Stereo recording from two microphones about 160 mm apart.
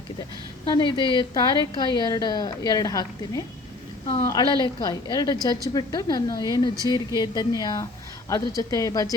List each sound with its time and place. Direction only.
0.8 s a woman's voice: 30° left (ahead or behind)